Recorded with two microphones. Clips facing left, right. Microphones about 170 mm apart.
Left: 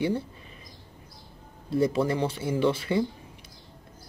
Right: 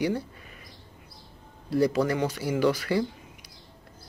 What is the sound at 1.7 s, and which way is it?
Speech, 25° left (ahead or behind).